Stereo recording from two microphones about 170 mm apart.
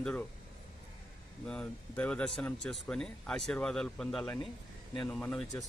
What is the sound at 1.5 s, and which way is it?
Speech, 5° left (ahead or behind).